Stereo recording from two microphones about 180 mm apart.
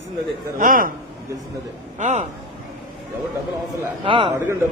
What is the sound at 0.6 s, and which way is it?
Speech, 50° right (ahead or behind).